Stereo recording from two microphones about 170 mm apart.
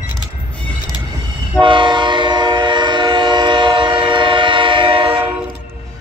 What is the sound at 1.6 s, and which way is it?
Train, 30° right (ahead or behind).